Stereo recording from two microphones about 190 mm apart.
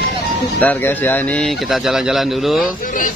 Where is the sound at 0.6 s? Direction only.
10° left (ahead or behind).